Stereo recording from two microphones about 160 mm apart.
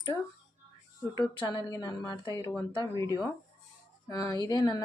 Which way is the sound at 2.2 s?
25° left (ahead or behind).